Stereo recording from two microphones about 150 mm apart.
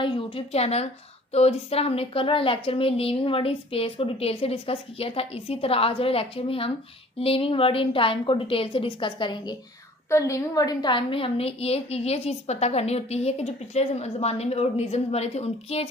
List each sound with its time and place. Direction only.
0.0 s a woman's voice: 35° left (ahead or behind)
10.1 s a woman's voice: 20° left (ahead or behind); by 15.9 s 45° left (ahead or behind)